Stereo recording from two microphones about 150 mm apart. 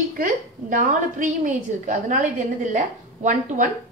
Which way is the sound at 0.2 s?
65° right (ahead or behind).